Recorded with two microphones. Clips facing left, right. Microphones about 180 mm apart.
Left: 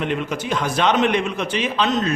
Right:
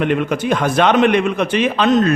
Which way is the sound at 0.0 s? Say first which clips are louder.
Right 6 dB; 60° right (ahead or behind).